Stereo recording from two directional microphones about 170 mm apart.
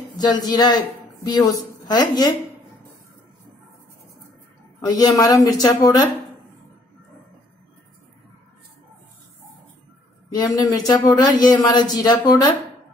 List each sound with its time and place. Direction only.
0.2 s a woman's voice: 25° left (ahead or behind)
4.8 s speech: 20° left (ahead or behind)
10.3 s speech: 20° left (ahead or behind)